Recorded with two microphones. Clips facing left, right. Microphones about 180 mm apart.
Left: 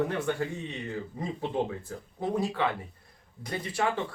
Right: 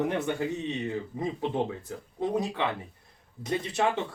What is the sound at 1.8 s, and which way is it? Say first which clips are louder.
Speech: right 2 dB; 20° right (ahead or behind).